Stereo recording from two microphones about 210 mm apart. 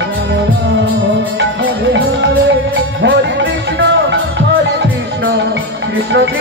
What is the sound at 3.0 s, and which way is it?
Music, 60° right (ahead or behind).